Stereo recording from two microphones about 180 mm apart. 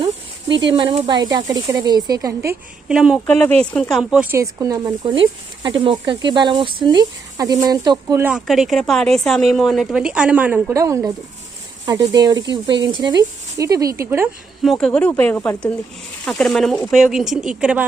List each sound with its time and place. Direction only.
0.7 s speech: 30° right (ahead or behind)
2.9 s speech: centre (ahead or behind)
8.4 s speech: centre (ahead or behind); by 14.0 s 20° right (ahead or behind)
14.6 s speech: centre (ahead or behind)